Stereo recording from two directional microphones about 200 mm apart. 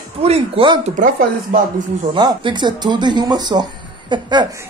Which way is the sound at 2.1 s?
25° right (ahead or behind).